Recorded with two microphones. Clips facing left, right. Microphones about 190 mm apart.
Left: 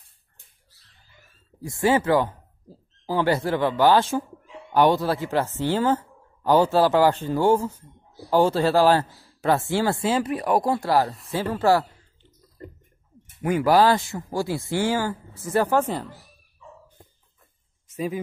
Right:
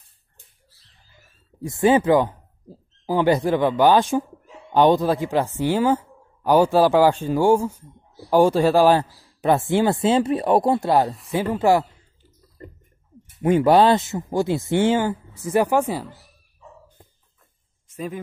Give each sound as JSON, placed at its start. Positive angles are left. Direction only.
{"t": 1.6, "sound": "a woman's voice", "side_deg": -20}
{"t": 13.4, "sound": "speech", "side_deg": -25}
{"t": 17.9, "sound": "speech", "side_deg": 5}